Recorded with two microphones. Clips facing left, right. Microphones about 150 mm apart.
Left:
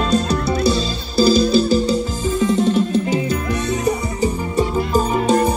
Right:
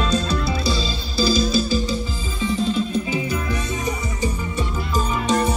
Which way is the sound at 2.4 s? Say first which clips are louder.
Left 5 dB; 80° left.